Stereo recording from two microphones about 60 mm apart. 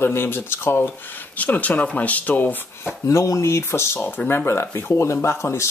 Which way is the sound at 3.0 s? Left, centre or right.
Left.